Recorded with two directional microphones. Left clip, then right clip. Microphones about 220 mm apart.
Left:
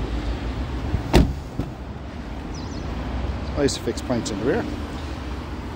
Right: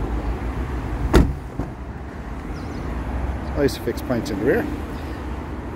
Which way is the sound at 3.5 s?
5° right (ahead or behind).